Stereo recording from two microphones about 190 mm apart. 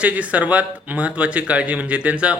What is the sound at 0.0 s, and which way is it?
A man's voice, 5° right (ahead or behind).